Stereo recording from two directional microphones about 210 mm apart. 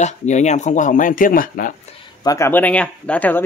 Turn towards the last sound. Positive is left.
turn(degrees=5)  # may be behind; listen again after turning